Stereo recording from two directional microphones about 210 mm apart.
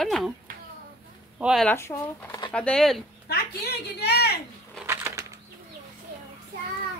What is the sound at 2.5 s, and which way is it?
Speech, 5° left (ahead or behind).